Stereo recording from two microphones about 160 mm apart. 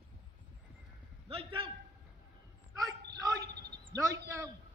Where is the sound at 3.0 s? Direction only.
90° right.